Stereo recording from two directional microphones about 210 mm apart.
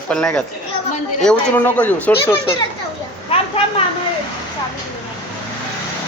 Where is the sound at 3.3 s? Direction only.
25° left (ahead or behind).